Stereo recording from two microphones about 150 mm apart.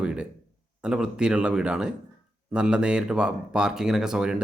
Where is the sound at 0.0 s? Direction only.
5° right (ahead or behind).